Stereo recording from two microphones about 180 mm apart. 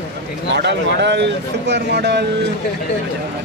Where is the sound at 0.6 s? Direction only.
70° right (ahead or behind).